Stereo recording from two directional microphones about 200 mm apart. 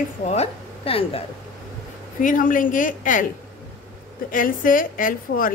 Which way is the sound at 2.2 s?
40° left (ahead or behind).